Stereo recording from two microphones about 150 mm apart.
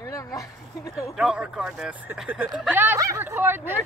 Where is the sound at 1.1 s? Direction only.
5° right (ahead or behind).